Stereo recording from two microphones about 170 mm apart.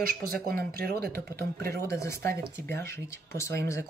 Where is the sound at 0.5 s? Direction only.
60° right (ahead or behind).